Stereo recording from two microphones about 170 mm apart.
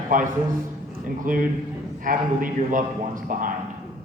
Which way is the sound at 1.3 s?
50° right (ahead or behind).